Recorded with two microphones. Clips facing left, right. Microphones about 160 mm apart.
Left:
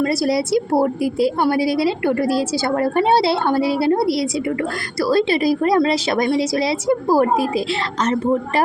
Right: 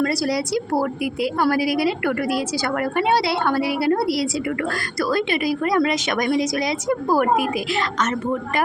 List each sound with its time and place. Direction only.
0.0 s a woman's voice: 25° left (ahead or behind)